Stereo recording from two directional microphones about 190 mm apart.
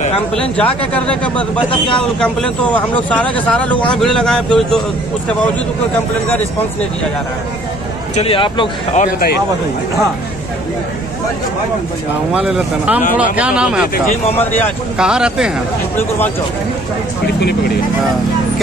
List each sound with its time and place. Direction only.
0.4 s speech: 5° left (ahead or behind)
8.2 s speech: 25° left (ahead or behind)
8.9 s speech: 40° left (ahead or behind)
12.4 s speech: 5° right (ahead or behind)
14.3 s speech: 10° left (ahead or behind)
15.0 s speech: 5° right (ahead or behind)
17.4 s speech: 60° left (ahead or behind)